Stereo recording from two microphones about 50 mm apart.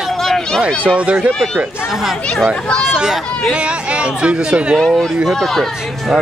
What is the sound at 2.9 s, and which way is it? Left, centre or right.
Speech, centre.